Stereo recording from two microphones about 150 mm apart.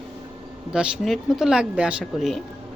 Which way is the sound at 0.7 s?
5° right (ahead or behind).